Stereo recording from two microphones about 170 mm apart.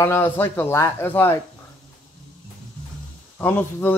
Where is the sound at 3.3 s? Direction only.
10° left (ahead or behind).